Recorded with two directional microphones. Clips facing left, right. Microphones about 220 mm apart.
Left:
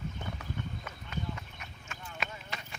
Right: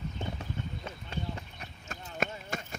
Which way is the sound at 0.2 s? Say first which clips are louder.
Right 4 dB; 25° right (ahead or behind).